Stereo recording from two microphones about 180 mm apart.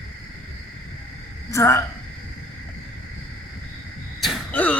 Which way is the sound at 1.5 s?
15° left (ahead or behind).